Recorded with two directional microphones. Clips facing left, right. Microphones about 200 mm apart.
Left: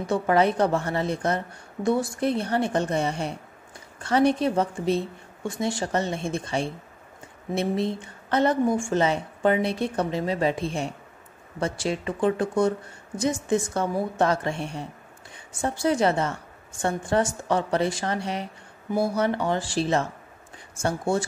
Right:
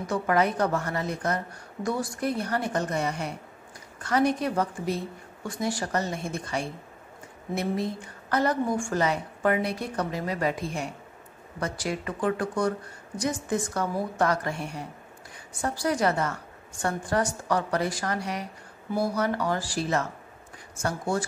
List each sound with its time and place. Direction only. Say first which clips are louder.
0.0 s a woman's voice: left 3 dB; 30° left (ahead or behind)